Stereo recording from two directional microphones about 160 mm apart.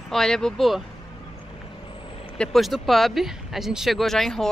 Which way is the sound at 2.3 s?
5° left (ahead or behind).